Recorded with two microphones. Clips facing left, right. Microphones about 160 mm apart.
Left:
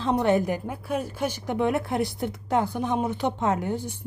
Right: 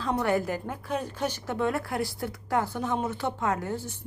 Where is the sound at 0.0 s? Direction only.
20° left (ahead or behind).